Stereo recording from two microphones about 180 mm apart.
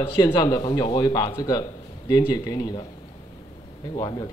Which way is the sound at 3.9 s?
20° left (ahead or behind).